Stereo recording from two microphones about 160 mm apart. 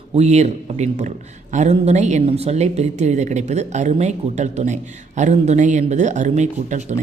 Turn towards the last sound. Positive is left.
turn(degrees=-45)  # may be behind; listen again after turning